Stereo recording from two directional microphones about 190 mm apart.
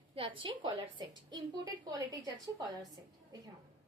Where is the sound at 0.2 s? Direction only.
25° right (ahead or behind).